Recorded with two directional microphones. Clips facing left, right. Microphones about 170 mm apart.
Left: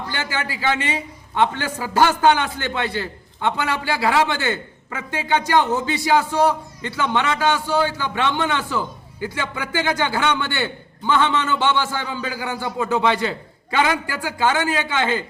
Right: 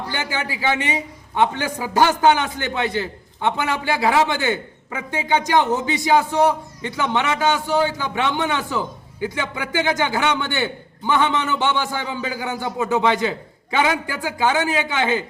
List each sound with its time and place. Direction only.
0.1 s a man's voice: 15° right (ahead or behind)